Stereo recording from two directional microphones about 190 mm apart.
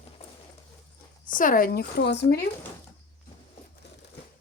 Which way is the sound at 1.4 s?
45° left (ahead or behind).